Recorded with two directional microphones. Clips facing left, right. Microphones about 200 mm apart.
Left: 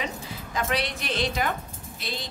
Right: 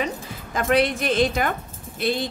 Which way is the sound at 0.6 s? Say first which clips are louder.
Right 8 dB; 50° right (ahead or behind).